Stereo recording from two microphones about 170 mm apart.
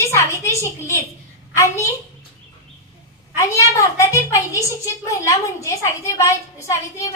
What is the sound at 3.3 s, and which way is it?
A woman's voice, 20° left (ahead or behind).